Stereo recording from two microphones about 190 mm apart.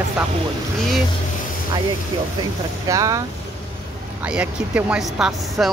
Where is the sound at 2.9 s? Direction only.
15° right (ahead or behind).